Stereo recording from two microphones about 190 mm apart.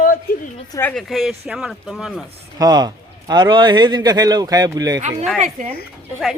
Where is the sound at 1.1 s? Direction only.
Centre (ahead or behind).